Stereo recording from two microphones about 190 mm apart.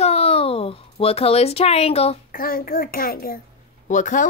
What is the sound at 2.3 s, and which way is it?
A child's voice, 50° left (ahead or behind).